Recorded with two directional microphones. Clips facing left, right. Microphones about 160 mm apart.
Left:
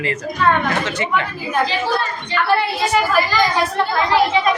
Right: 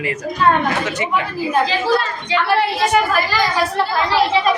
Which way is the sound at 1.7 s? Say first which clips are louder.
Right 3 dB; 90° right.